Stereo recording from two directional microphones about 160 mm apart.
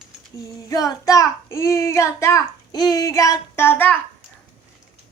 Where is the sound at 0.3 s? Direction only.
20° left (ahead or behind).